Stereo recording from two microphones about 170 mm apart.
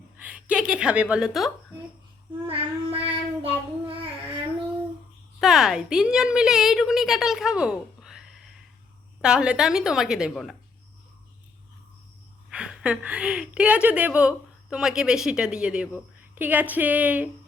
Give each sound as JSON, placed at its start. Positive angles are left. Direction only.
{"t": 0.2, "sound": "a woman's voice", "side_deg": -10}
{"t": 2.5, "sound": "child singing", "side_deg": -35}
{"t": 5.4, "sound": "a woman's voice", "side_deg": 0}
{"t": 12.5, "sound": "a woman's voice", "side_deg": -5}